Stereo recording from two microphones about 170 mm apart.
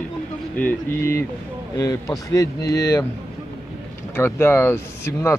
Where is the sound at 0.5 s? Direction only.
10° left (ahead or behind).